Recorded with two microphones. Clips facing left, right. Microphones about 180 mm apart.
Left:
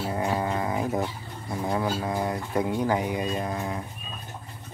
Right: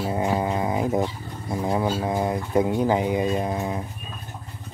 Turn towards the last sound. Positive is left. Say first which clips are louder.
# right 4 dB
turn(degrees=-20)  # may be behind; listen again after turning